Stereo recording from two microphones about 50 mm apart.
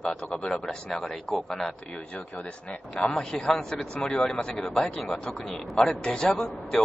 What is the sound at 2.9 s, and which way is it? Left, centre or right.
A man's voice, centre.